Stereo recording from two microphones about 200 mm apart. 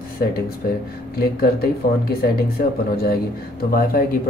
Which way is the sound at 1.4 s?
50° left (ahead or behind).